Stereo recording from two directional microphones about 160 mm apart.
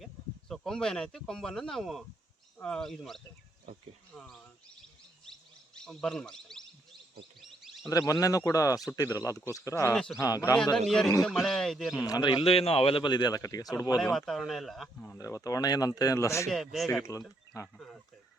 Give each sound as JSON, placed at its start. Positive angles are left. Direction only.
{"t": 0.0, "sound": "speech", "side_deg": 0}
{"t": 5.2, "sound": "bird", "side_deg": 5}
{"t": 7.4, "sound": "a sound", "side_deg": 0}
{"t": 7.9, "sound": "speech", "side_deg": 20}
{"t": 9.9, "sound": "speech", "side_deg": 5}
{"t": 10.2, "sound": "speech", "side_deg": 20}
{"t": 10.8, "sound": "speech", "side_deg": 0}
{"t": 12.0, "sound": "speech", "side_deg": 25}
{"t": 14.0, "sound": "speech", "side_deg": 0}
{"t": 15.0, "sound": "speech", "side_deg": 15}
{"t": 16.5, "sound": "speech", "side_deg": 0}